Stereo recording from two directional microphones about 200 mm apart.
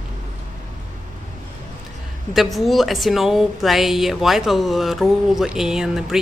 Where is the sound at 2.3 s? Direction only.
Centre (ahead or behind).